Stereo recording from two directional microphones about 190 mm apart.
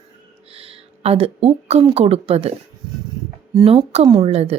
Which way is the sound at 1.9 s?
30° right (ahead or behind).